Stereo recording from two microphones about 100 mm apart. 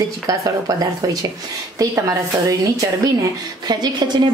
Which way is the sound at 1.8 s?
35° right (ahead or behind).